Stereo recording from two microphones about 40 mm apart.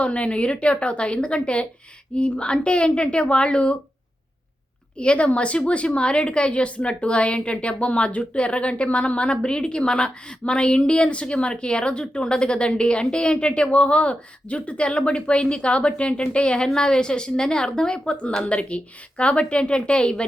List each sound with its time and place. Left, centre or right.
0.0 s a woman's voice: left
4.9 s a woman's voice: left